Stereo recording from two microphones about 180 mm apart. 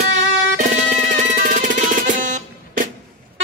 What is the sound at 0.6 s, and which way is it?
Music, 45° right (ahead or behind).